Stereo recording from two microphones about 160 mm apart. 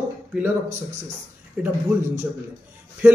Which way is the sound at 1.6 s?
10° right (ahead or behind).